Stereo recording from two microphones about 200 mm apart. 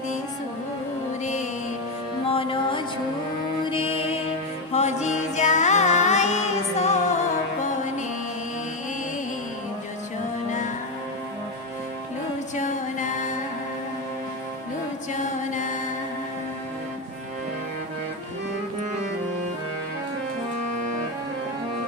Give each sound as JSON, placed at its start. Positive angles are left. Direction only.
{"t": 1.2, "sound": "music", "side_deg": 35}
{"t": 2.3, "sound": "music", "side_deg": 25}
{"t": 12.5, "sound": "music", "side_deg": 40}
{"t": 15.1, "sound": "music", "side_deg": 40}